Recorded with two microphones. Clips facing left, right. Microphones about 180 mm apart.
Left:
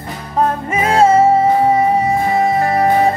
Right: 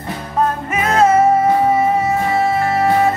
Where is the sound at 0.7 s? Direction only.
30° left (ahead or behind).